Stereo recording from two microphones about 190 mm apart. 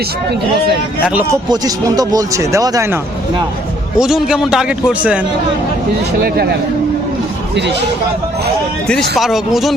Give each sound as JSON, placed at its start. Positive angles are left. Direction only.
{"t": 1.5, "sound": "speech", "side_deg": -20}
{"t": 3.9, "sound": "a man's voice", "side_deg": -5}
{"t": 6.2, "sound": "speech", "side_deg": -55}
{"t": 8.9, "sound": "a man's voice", "side_deg": 0}